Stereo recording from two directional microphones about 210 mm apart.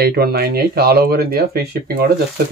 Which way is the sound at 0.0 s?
50° right (ahead or behind).